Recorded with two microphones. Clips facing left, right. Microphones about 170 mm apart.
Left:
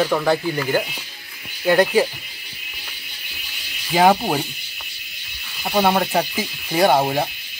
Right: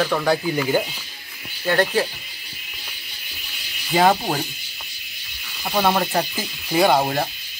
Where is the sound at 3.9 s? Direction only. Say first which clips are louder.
Left 2 dB; 10° left (ahead or behind).